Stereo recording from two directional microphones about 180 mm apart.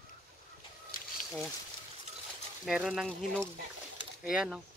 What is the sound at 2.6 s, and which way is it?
Speech, centre (ahead or behind).